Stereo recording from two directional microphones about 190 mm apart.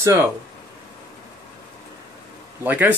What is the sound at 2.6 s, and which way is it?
Speech, 10° right (ahead or behind).